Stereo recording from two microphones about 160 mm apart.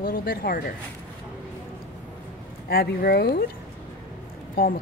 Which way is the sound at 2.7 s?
70° left (ahead or behind).